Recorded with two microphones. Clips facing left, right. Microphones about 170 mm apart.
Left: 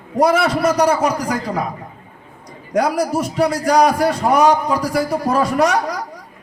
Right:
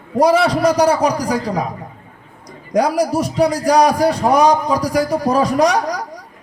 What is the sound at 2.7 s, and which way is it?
A man's voice, 10° right (ahead or behind).